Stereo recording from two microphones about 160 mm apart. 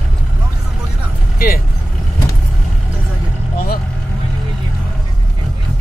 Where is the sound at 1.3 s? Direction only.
70° left (ahead or behind).